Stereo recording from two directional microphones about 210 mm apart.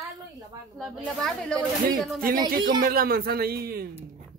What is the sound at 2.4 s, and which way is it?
A man's voice, 45° right (ahead or behind).